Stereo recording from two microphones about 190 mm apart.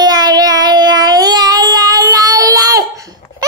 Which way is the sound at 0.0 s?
20° right (ahead or behind).